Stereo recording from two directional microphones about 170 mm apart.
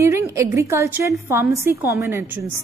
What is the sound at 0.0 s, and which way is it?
A woman's voice, 15° right (ahead or behind).